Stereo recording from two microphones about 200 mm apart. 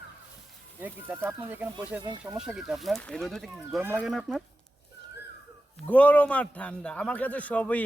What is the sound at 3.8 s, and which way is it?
Speech, 10° right (ahead or behind).